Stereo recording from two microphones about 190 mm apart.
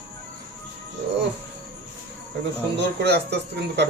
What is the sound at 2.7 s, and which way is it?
Speech, 60° right (ahead or behind).